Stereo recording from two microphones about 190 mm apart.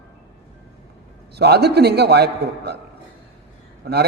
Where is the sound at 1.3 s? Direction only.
60° right (ahead or behind).